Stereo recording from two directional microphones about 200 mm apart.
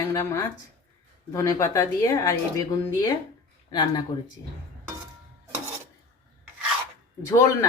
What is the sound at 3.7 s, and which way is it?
Speech, 20° left (ahead or behind).